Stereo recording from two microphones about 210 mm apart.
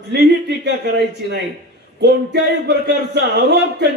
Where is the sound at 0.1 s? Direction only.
55° right (ahead or behind).